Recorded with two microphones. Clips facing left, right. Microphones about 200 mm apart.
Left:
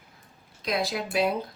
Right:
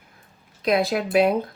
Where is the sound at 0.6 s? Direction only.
60° right (ahead or behind).